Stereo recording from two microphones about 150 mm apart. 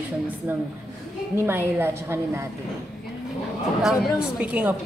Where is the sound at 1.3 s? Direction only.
15° right (ahead or behind).